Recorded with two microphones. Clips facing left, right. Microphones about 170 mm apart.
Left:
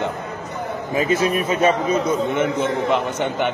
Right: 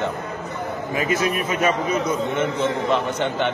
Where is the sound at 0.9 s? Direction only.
25° left (ahead or behind).